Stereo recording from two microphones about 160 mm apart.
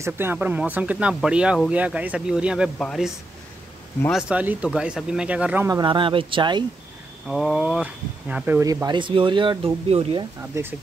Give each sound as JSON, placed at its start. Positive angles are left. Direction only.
{"t": 0.0, "sound": "speech", "side_deg": -15}
{"t": 4.1, "sound": "speech", "side_deg": -5}
{"t": 5.7, "sound": "speech", "side_deg": -25}
{"t": 7.2, "sound": "speech", "side_deg": 0}
{"t": 8.6, "sound": "speech", "side_deg": -25}
{"t": 10.6, "sound": "speech", "side_deg": -20}